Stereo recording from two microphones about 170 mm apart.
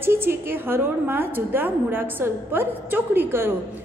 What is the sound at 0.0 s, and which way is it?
A woman's voice, 15° right (ahead or behind).